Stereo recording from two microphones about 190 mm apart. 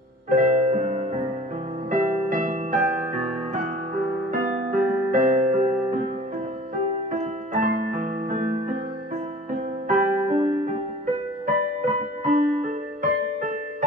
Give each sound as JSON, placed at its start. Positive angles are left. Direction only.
{"t": 0.3, "sound": "music", "side_deg": -40}
{"t": 4.3, "sound": "music", "side_deg": -45}
{"t": 7.1, "sound": "music", "side_deg": -45}
{"t": 9.8, "sound": "music", "side_deg": -40}